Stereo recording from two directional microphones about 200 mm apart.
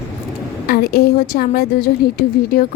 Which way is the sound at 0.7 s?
50° left (ahead or behind).